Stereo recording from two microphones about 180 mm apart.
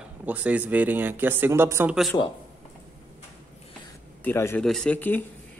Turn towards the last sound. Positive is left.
turn(degrees=10)  # may be behind; listen again after turning